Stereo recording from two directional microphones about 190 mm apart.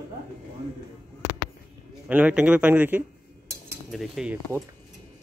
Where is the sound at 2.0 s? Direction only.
5° right (ahead or behind).